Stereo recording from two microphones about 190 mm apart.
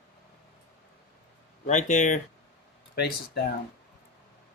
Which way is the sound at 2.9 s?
60° left (ahead or behind).